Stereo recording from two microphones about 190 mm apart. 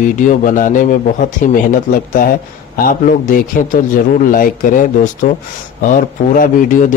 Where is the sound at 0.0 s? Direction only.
45° left (ahead or behind).